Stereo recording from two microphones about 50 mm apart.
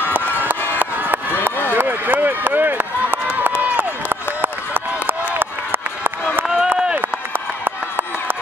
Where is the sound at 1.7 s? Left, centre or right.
Right.